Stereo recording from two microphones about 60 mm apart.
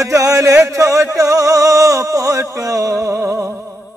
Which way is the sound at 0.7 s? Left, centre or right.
Right.